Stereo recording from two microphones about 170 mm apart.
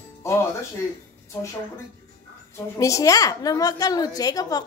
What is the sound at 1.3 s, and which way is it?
A woman's voice, 20° left (ahead or behind).